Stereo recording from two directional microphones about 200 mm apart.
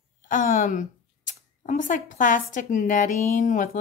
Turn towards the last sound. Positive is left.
turn(degrees=35)  # may be behind; listen again after turning